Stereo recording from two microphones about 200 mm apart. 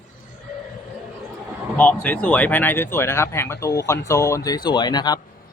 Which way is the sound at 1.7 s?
5° left (ahead or behind).